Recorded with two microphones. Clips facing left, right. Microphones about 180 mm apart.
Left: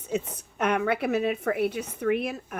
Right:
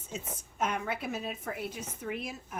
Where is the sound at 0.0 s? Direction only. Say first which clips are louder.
Left 11 dB; 65° left (ahead or behind).